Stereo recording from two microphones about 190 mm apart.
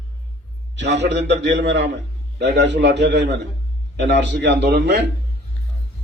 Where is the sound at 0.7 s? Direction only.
65° right (ahead or behind).